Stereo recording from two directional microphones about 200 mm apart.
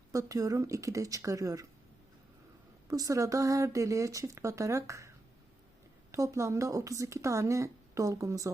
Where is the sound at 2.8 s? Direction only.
15° right (ahead or behind).